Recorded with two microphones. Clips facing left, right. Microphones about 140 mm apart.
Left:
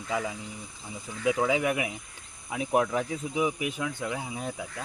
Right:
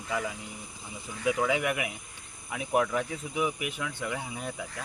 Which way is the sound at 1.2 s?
20° left (ahead or behind).